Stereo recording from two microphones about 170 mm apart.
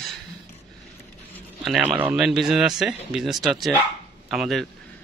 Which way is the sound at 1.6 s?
5° right (ahead or behind).